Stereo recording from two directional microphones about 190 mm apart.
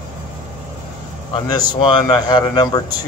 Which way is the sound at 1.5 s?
20° left (ahead or behind).